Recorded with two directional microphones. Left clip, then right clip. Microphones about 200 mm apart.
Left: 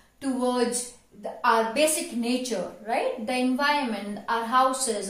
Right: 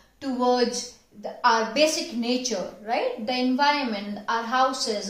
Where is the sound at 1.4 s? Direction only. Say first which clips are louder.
Right 1 dB; 30° right (ahead or behind).